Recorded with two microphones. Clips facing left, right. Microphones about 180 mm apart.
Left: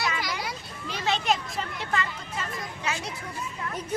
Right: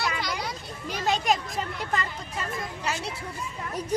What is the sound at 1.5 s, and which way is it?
Speech, 40° right (ahead or behind).